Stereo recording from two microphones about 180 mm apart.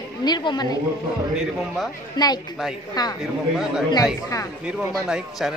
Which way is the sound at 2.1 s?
20° left (ahead or behind).